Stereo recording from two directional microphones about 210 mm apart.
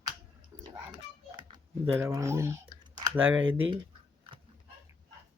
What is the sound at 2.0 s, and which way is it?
Typing, 15° right (ahead or behind).